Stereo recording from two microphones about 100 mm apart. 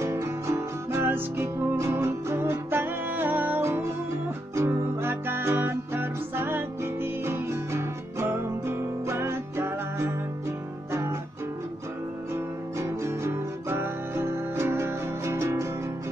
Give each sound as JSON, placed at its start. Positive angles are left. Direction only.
{"t": 0.0, "sound": "music", "side_deg": -30}
{"t": 12.7, "sound": "music", "side_deg": -25}